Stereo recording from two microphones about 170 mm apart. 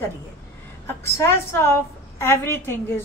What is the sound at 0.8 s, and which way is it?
A woman's voice, 15° left (ahead or behind).